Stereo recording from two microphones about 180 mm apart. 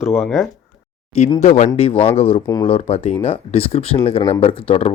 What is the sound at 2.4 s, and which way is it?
Speech, 15° left (ahead or behind).